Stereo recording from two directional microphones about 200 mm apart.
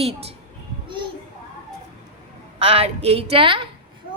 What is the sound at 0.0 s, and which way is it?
Speech, 30° right (ahead or behind).